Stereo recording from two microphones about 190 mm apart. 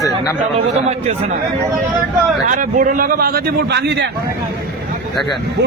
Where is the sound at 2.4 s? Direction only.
40° right (ahead or behind); by 4.1 s 60° right (ahead or behind).